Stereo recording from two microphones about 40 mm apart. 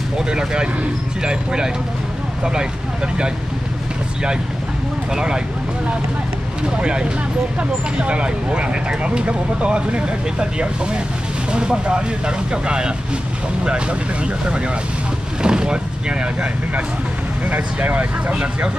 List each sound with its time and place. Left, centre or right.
0.3 s speech: right
5.1 s speech: centre
6.8 s speech: right
17.5 s speech: right